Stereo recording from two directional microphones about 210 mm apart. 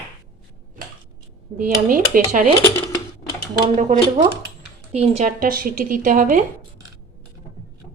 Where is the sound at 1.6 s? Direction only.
40° right (ahead or behind).